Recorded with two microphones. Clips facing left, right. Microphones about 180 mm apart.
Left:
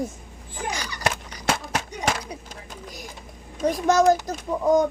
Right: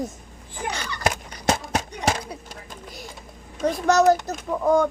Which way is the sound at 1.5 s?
25° right (ahead or behind).